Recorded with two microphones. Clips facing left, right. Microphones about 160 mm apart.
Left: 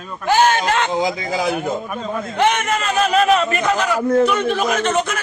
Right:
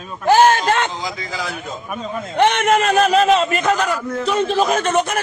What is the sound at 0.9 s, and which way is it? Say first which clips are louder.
Speech: left 7 dB; 55° left (ahead or behind).